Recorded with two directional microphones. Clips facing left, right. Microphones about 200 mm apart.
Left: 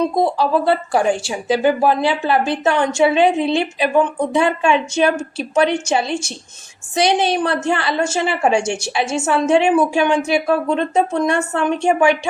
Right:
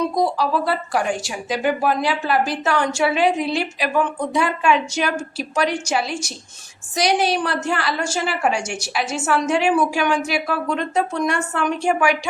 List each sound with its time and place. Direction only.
0.0 s speech: 25° left (ahead or behind)